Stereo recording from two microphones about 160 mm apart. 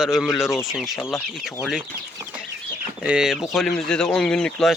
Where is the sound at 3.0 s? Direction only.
5° right (ahead or behind).